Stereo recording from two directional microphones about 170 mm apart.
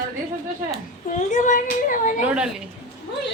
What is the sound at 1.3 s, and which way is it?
Speech, 50° left (ahead or behind).